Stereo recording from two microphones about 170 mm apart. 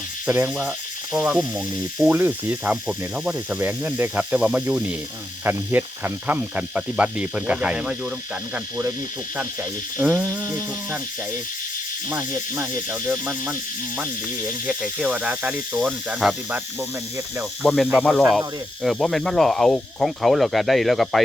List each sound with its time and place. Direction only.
0.3 s speech: 5° right (ahead or behind)
10.0 s speech: centre (ahead or behind)
12.0 s speech: 20° right (ahead or behind)
17.6 s speech: centre (ahead or behind)